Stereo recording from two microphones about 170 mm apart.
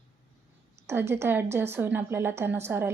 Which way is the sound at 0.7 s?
15° right (ahead or behind).